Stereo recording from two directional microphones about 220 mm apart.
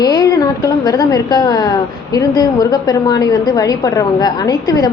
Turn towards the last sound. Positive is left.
turn(degrees=15)  # may be behind; listen again after turning